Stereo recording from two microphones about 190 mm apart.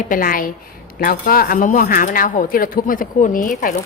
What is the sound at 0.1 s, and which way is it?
Speech, 45° left (ahead or behind).